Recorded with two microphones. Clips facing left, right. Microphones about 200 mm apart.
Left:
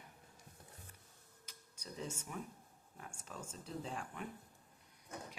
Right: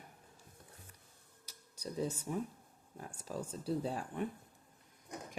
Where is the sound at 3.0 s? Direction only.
35° right (ahead or behind).